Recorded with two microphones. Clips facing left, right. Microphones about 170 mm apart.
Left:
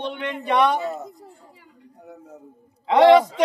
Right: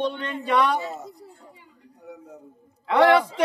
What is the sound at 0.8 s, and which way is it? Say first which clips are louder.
Speech: left 5 dB; 55° left (ahead or behind).